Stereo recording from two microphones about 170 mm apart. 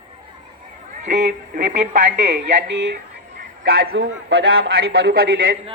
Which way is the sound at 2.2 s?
90° right.